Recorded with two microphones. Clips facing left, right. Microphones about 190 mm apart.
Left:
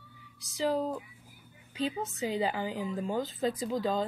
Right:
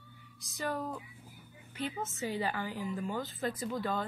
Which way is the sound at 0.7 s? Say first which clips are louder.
Left 6 dB; 15° left (ahead or behind).